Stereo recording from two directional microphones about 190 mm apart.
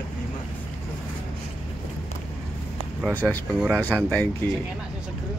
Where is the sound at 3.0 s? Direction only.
10° left (ahead or behind).